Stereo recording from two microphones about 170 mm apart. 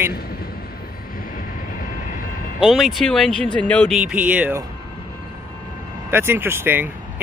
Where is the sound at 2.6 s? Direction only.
Centre (ahead or behind).